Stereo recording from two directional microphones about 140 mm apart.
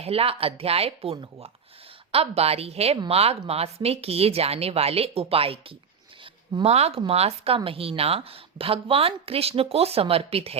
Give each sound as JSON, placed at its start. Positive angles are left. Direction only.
{"t": 0.0, "sound": "a woman's voice", "side_deg": -45}